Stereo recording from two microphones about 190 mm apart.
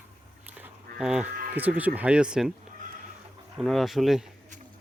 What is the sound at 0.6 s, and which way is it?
Speech, 5° right (ahead or behind).